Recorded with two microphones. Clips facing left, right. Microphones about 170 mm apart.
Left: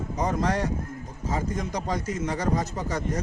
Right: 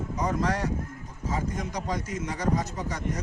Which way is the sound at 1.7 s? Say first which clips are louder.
Left 3 dB; 30° left (ahead or behind).